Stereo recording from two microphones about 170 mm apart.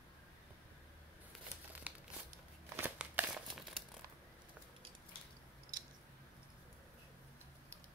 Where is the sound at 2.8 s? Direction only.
10° right (ahead or behind).